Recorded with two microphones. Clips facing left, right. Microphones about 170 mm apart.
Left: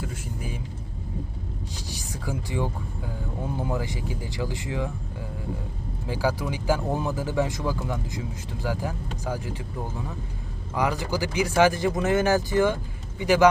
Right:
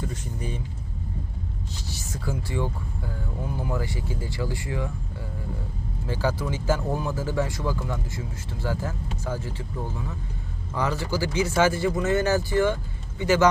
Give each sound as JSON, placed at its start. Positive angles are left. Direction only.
{"t": 0.0, "sound": "speech", "side_deg": 5}
{"t": 1.9, "sound": "speech", "side_deg": 15}
{"t": 6.1, "sound": "speech", "side_deg": 10}
{"t": 10.8, "sound": "speech", "side_deg": 15}